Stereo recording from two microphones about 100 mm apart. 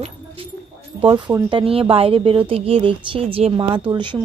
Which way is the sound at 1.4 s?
60° right (ahead or behind).